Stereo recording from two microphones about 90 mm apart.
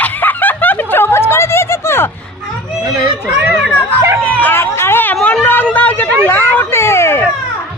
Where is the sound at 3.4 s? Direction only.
10° right (ahead or behind).